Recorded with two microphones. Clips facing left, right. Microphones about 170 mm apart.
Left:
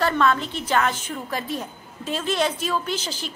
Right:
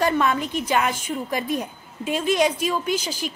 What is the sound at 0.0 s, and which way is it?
A woman's voice, 15° right (ahead or behind).